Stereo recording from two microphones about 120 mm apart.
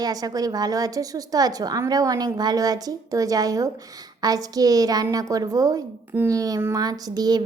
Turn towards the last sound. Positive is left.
turn(degrees=-35)  # may be behind; listen again after turning